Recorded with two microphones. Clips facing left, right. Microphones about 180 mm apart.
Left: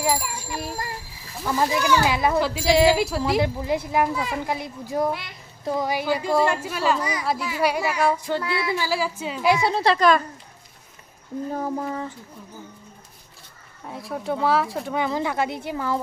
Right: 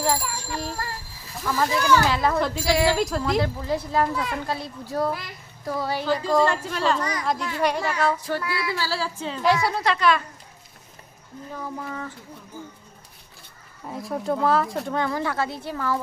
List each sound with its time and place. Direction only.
0.0 s bicycle bell: 10° left (ahead or behind)
1.5 s speech: 20° left (ahead or behind)
3.0 s speech: 5° left (ahead or behind)
3.4 s speech: 15° left (ahead or behind)
4.1 s speech: 5° left (ahead or behind)
4.4 s speech: 15° left (ahead or behind)
5.1 s speech: centre (ahead or behind)
5.6 s speech: 20° left (ahead or behind)
8.4 s speech: 25° left (ahead or behind); by 10.2 s 40° left (ahead or behind)
11.5 s a sound: 40° left (ahead or behind)
13.8 s speech: centre (ahead or behind)
15.0 s speech: 15° left (ahead or behind)